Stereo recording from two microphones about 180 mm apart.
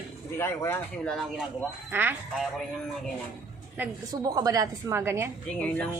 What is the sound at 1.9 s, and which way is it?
Speech, 10° right (ahead or behind).